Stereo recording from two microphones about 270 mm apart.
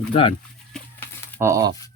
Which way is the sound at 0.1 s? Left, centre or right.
Centre.